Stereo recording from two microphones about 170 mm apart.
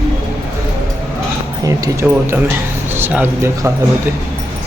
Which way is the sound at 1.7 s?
20° right (ahead or behind).